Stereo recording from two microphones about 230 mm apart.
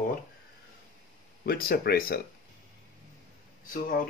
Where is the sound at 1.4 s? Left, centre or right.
Left.